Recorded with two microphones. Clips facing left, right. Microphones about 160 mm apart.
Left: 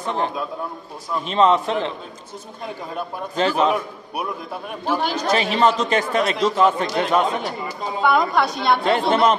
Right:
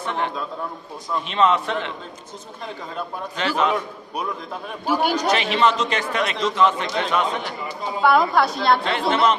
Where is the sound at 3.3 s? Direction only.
35° left (ahead or behind).